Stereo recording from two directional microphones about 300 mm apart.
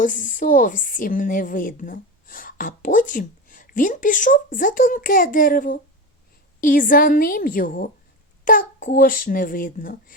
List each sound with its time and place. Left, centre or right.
0.0 s a woman's voice: left